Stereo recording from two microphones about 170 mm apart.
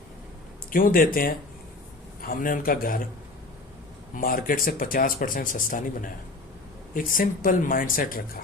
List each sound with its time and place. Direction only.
0.7 s speech: 55° left (ahead or behind)
4.1 s speech: 55° left (ahead or behind)
6.9 s speech: 55° left (ahead or behind)